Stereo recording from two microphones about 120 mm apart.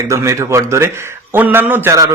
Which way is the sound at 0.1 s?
25° right (ahead or behind).